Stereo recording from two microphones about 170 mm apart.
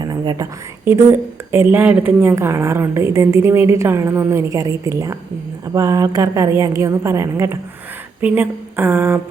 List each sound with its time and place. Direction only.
0.0 s whispering: 25° right (ahead or behind)
0.9 s a woman's voice: 15° right (ahead or behind)